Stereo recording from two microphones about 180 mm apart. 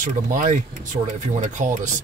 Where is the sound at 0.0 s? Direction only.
45° right (ahead or behind).